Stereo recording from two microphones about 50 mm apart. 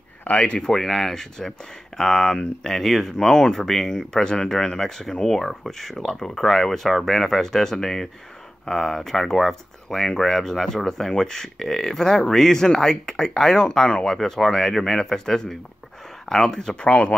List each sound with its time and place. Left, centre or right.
0.2 s speech: left
0.6 s speech: centre